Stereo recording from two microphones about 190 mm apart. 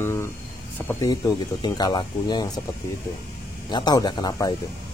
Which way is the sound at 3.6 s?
25° left (ahead or behind).